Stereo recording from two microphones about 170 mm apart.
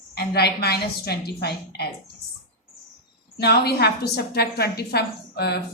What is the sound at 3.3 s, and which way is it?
A woman's voice, 70° left (ahead or behind).